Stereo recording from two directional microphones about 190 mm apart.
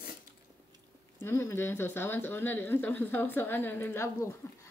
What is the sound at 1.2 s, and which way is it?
Speech, 15° left (ahead or behind).